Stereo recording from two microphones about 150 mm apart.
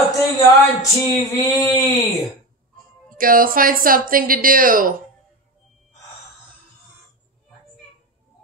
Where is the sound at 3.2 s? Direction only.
70° right (ahead or behind).